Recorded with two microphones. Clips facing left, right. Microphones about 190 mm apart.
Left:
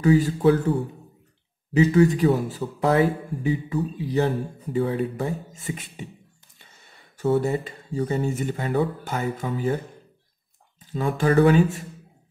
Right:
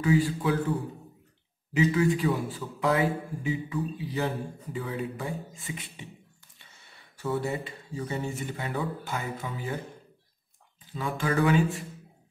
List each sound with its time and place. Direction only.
0.0 s speech: 45° left (ahead or behind)
1.8 s a man's voice: 40° left (ahead or behind)
7.2 s speech: 40° left (ahead or behind)
10.9 s a man's voice: 40° left (ahead or behind)